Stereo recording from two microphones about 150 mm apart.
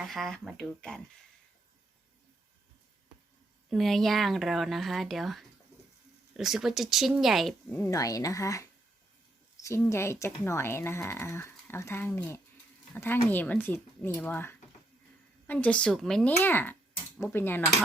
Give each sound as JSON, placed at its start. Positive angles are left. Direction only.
{"t": 0.0, "sound": "speech", "side_deg": 0}
{"t": 3.7, "sound": "speech", "side_deg": 0}
{"t": 7.9, "sound": "speech", "side_deg": 25}